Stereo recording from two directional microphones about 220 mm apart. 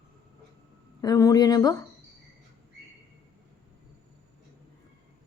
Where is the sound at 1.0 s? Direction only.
15° left (ahead or behind).